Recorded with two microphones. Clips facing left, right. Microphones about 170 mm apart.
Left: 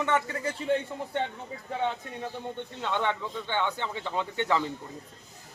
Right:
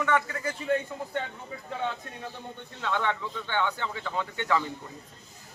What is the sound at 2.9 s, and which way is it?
A man's voice, 15° left (ahead or behind).